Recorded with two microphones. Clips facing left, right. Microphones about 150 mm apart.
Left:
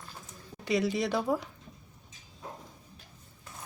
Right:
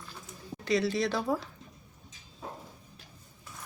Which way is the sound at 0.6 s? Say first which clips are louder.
Right 1 dB; 15° left (ahead or behind).